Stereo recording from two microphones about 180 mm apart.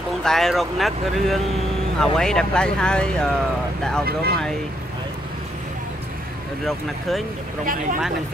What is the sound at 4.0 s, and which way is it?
Speech, 60° right (ahead or behind).